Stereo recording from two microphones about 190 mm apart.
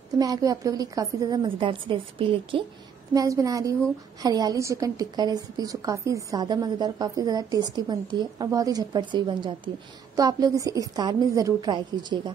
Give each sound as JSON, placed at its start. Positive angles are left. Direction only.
{"t": 0.2, "sound": "a woman's voice", "side_deg": -20}
{"t": 3.1, "sound": "a woman's voice", "side_deg": -15}